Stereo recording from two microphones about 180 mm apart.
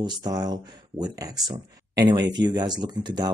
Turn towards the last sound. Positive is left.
turn(degrees=-25)  # may be behind; listen again after turning